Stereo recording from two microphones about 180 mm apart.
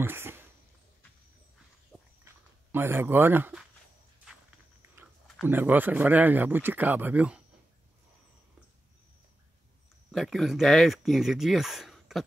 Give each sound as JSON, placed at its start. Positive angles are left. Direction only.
{"t": 0.0, "sound": "a sound", "side_deg": -10}
{"t": 1.9, "sound": "walk", "side_deg": 0}
{"t": 2.2, "sound": "speech", "side_deg": -10}
{"t": 4.9, "sound": "speech", "side_deg": -10}
{"t": 10.1, "sound": "speech", "side_deg": 0}